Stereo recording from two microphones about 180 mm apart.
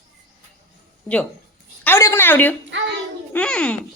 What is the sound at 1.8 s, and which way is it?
Speech, 15° left (ahead or behind).